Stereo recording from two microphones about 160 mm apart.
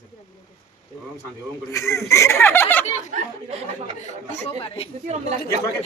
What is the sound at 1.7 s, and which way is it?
Speech, 20° left (ahead or behind).